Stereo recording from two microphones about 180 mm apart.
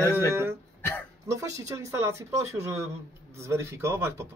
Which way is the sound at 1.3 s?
20° right (ahead or behind).